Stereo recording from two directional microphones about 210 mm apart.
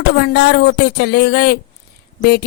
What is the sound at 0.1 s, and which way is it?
Speech, 55° left (ahead or behind).